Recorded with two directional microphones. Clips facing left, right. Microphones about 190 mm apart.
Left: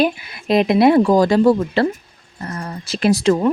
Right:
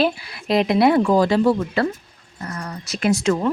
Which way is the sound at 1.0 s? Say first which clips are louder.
Left 3 dB; 40° left (ahead or behind).